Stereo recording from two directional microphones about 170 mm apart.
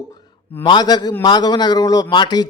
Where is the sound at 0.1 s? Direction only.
25° left (ahead or behind).